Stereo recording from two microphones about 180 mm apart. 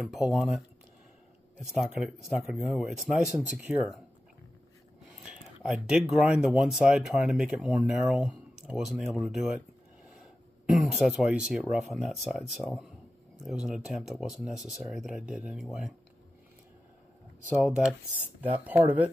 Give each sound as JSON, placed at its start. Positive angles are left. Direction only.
{"t": 0.0, "sound": "speech", "side_deg": -5}
{"t": 1.7, "sound": "speech", "side_deg": -5}
{"t": 5.2, "sound": "speech", "side_deg": -5}
{"t": 10.0, "sound": "throat clearing", "side_deg": 0}
{"t": 11.7, "sound": "speech", "side_deg": 0}
{"t": 17.5, "sound": "speech", "side_deg": -5}